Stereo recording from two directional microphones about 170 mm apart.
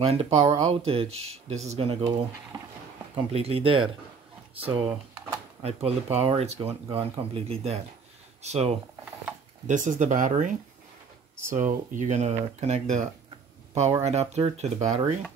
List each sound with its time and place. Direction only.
0.0 s speech: 35° right (ahead or behind)
4.8 s a sound: 10° right (ahead or behind)
5.6 s speech: 35° right (ahead or behind)